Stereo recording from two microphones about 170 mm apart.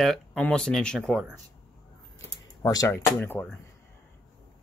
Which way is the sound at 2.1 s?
20° left (ahead or behind).